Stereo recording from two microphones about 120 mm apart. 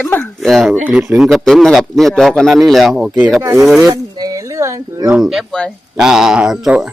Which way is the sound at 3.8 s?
30° right (ahead or behind).